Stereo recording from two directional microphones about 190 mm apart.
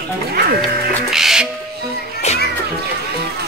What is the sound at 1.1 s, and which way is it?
Music, 5° right (ahead or behind).